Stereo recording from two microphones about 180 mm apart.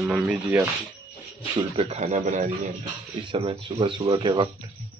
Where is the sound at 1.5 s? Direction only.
30° right (ahead or behind).